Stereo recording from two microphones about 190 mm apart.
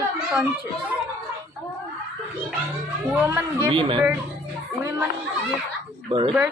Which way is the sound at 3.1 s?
15° right (ahead or behind).